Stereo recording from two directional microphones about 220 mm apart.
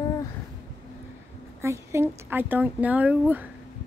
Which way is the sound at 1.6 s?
10° right (ahead or behind).